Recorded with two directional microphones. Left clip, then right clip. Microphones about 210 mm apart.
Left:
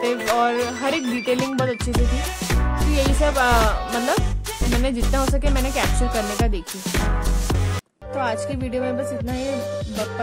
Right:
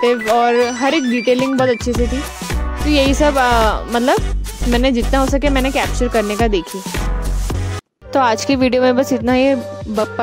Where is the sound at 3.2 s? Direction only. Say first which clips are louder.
Right 2 dB; 30° right (ahead or behind).